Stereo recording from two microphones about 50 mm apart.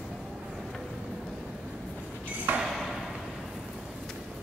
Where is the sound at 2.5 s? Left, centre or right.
Right.